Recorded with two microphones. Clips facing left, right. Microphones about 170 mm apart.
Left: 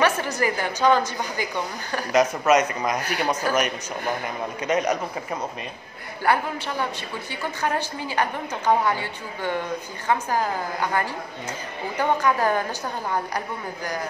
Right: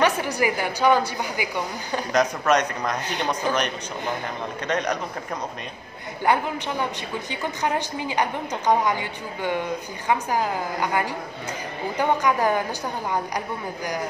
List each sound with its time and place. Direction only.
0.0 s a woman's voice: 15° right (ahead or behind)
2.1 s a man's voice: 5° left (ahead or behind)
6.2 s a woman's voice: 15° right (ahead or behind)